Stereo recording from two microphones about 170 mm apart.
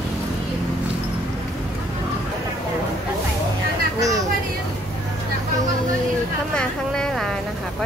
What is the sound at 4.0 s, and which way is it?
Speech, 20° right (ahead or behind).